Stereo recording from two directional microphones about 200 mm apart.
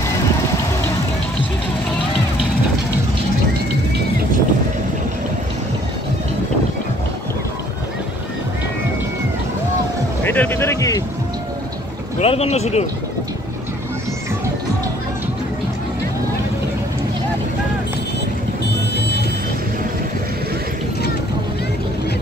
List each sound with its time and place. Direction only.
10.2 s a sound: 10° left (ahead or behind)
12.2 s speech: 30° left (ahead or behind)
18.9 s music: 55° left (ahead or behind)